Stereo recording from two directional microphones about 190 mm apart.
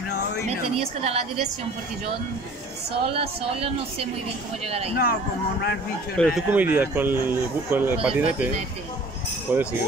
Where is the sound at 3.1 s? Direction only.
30° right (ahead or behind).